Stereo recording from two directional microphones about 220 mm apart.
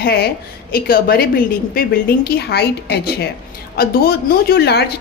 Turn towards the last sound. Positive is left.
turn(degrees=45)  # may be behind; listen again after turning